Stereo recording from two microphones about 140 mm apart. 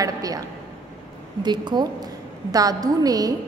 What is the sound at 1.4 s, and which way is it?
A woman's voice, 30° right (ahead or behind).